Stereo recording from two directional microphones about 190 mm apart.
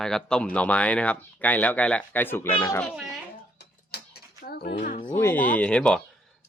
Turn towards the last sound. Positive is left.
turn(degrees=5)  # may be behind; listen again after turning